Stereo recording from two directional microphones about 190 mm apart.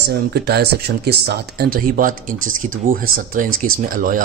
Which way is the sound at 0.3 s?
60° right (ahead or behind).